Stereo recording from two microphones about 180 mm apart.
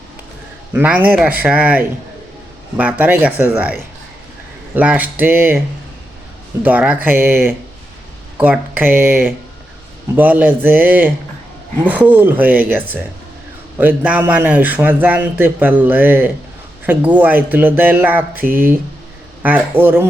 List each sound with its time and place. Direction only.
0.7 s a man's voice: 10° right (ahead or behind)
6.6 s a man's voice: 10° right (ahead or behind)
8.4 s a man's voice: 10° right (ahead or behind)